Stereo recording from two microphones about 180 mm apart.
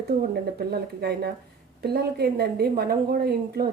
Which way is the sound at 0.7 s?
60° right (ahead or behind).